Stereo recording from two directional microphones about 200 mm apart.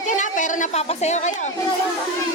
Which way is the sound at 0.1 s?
40° left (ahead or behind).